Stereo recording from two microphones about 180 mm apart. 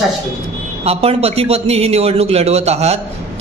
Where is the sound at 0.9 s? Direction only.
35° right (ahead or behind).